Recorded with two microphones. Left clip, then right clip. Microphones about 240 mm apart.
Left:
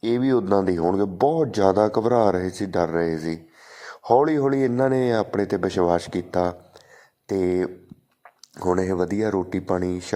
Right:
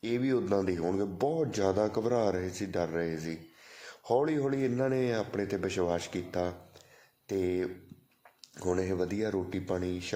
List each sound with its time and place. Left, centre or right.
0.0 s speech: left